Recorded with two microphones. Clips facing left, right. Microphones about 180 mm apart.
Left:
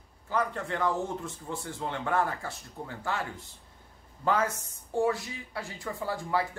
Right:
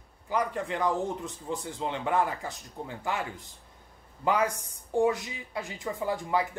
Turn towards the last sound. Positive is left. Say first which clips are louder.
# right 2 dB
turn(degrees=-20)  # may be behind; listen again after turning